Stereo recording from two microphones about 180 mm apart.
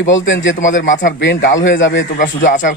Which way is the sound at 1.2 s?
85° left.